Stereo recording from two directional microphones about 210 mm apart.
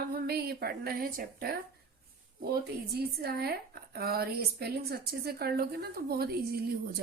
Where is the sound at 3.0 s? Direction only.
50° right (ahead or behind).